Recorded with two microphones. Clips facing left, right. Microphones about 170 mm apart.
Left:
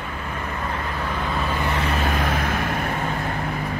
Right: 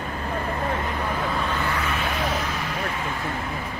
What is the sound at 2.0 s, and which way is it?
Vehicle, 50° left (ahead or behind).